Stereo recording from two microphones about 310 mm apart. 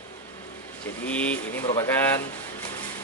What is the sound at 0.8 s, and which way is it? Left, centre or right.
Speech, centre.